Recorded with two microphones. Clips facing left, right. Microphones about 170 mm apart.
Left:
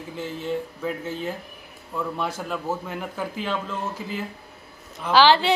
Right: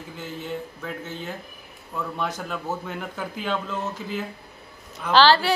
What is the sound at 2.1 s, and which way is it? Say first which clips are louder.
A woman's voice: left 1 dB; 5° left (ahead or behind).